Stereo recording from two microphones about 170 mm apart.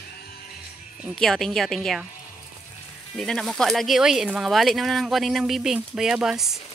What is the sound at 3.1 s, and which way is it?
Speech, centre (ahead or behind).